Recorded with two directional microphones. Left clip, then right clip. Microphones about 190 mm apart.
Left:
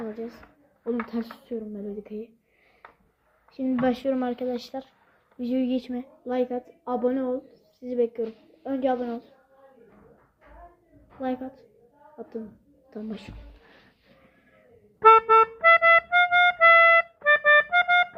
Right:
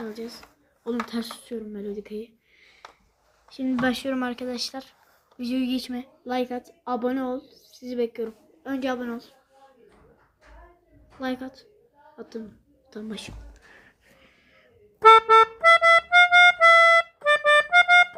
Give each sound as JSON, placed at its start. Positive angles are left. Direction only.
{"t": 0.3, "sound": "speech", "side_deg": 5}
{"t": 1.1, "sound": "speech", "side_deg": -15}
{"t": 3.5, "sound": "speech", "side_deg": -15}
{"t": 11.2, "sound": "speech", "side_deg": -15}
{"t": 12.9, "sound": "speech", "side_deg": -15}
{"t": 14.9, "sound": "music", "side_deg": 10}